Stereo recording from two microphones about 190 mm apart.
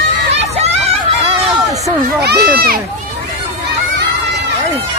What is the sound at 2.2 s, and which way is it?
Speech, 55° right (ahead or behind).